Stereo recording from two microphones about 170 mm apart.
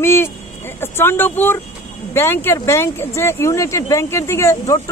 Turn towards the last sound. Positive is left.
turn(degrees=20)  # may be behind; listen again after turning